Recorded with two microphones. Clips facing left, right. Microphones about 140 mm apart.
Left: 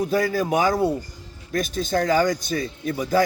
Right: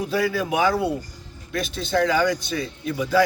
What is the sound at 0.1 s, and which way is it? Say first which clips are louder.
A man's voice: left 2 dB; 45° left (ahead or behind).